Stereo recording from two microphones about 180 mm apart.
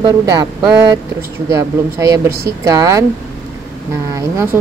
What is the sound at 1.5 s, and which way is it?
Speech, 20° right (ahead or behind).